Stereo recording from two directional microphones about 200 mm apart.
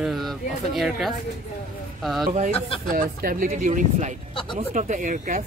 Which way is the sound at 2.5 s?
30° left (ahead or behind).